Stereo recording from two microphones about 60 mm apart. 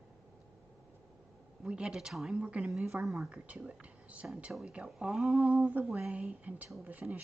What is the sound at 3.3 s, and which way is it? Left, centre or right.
A woman's voice, right.